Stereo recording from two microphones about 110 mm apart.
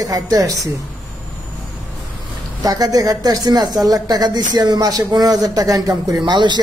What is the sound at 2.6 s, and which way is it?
A woman's voice, 35° right (ahead or behind).